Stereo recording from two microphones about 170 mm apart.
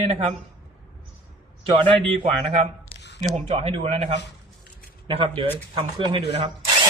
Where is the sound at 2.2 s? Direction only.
45° right (ahead or behind); by 6.1 s 30° right (ahead or behind).